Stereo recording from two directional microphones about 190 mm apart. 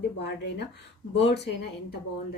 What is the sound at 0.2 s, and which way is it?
Speech, 65° left (ahead or behind).